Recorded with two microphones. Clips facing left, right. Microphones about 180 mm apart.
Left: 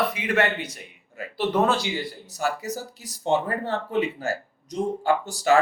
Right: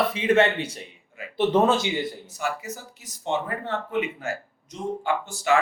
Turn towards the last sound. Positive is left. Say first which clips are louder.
# left 3 dB
turn(degrees=35)  # may be behind; listen again after turning